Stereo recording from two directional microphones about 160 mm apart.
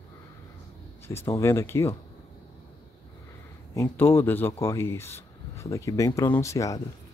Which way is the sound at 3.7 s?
15° left (ahead or behind).